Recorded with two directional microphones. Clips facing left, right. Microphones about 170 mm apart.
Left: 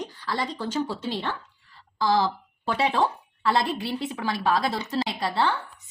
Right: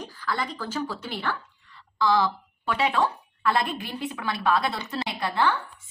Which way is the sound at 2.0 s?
40° left (ahead or behind).